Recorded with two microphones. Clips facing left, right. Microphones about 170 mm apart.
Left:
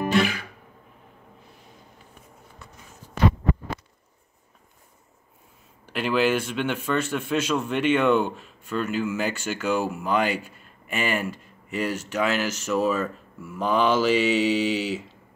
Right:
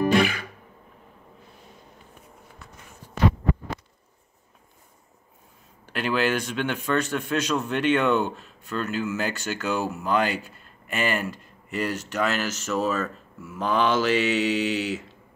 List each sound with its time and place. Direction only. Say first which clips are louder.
5.9 s a man's voice: left 2 dB; 5° left (ahead or behind)